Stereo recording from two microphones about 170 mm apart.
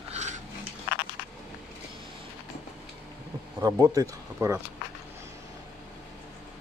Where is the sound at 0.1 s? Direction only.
45° right (ahead or behind).